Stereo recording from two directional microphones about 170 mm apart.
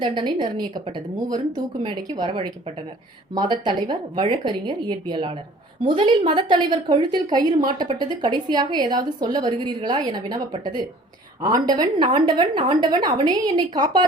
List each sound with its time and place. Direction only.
0.0 s a woman's voice: 25° right (ahead or behind)